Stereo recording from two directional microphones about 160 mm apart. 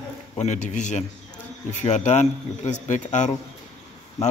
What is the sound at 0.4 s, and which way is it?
A man's voice, 50° left (ahead or behind).